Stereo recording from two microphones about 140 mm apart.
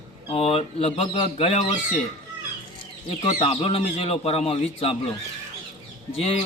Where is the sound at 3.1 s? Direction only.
45° left (ahead or behind).